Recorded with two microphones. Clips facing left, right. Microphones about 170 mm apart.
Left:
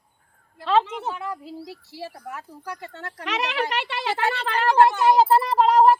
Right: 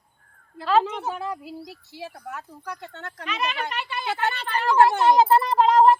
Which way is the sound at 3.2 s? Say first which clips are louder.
Left 3 dB; 85° left.